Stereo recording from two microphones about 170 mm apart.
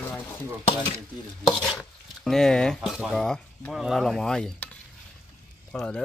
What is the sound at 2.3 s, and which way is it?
Speech, 5° left (ahead or behind).